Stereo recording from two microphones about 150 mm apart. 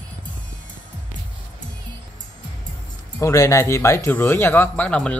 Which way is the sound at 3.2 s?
20° left (ahead or behind).